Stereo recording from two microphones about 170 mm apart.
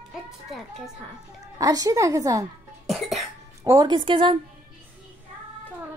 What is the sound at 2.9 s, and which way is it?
Cough, centre (ahead or behind).